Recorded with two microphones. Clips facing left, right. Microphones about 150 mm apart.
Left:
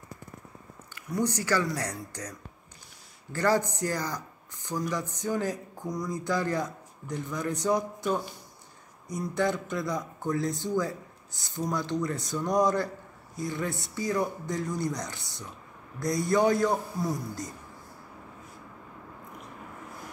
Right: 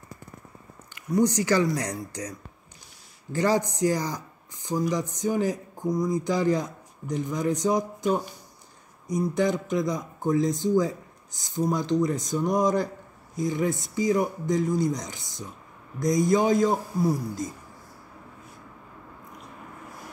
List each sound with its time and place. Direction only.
0.9 s speech: 15° right (ahead or behind)
3.3 s speech: 15° right (ahead or behind)
9.1 s speech: 15° right (ahead or behind)